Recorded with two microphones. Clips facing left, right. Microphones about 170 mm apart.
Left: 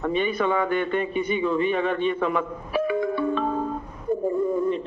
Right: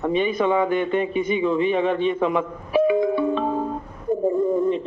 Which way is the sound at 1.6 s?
45° left (ahead or behind).